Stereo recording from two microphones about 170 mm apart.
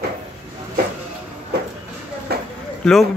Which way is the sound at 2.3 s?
70° right (ahead or behind).